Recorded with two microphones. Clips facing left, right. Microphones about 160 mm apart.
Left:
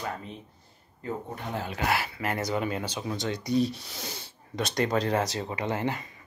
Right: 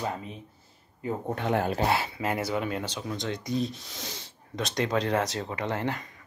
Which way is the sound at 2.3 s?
5° right (ahead or behind).